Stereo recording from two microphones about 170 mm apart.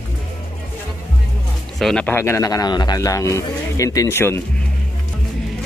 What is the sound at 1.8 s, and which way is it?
Speech, 5° left (ahead or behind).